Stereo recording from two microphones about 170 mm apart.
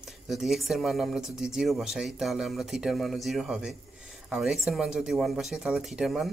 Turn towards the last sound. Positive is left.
turn(degrees=0)  # may be behind; listen again after turning